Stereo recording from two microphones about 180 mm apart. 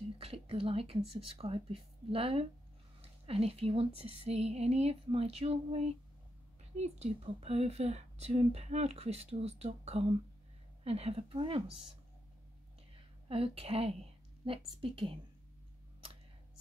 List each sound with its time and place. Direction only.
0.2 s speech: 30° right (ahead or behind)
13.3 s a woman's voice: 30° right (ahead or behind)